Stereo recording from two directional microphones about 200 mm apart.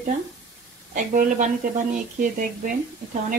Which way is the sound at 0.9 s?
40° right (ahead or behind).